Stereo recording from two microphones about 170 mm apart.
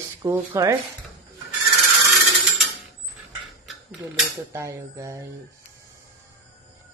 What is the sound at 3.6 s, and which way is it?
Tick-tock, centre (ahead or behind).